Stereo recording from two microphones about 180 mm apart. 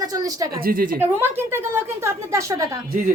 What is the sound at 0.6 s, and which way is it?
Speech, 55° right (ahead or behind).